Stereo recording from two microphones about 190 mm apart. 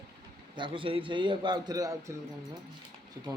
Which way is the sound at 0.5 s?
25° right (ahead or behind).